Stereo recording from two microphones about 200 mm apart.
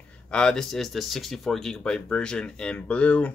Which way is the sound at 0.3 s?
5° left (ahead or behind).